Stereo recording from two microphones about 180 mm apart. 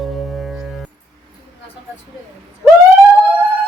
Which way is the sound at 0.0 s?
Centre (ahead or behind).